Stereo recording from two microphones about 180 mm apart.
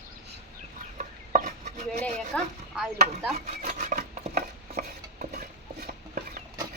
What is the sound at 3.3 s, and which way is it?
Rub, 40° right (ahead or behind).